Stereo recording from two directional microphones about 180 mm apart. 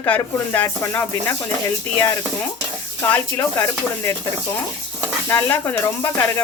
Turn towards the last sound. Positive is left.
turn(degrees=10)  # may be behind; listen again after turning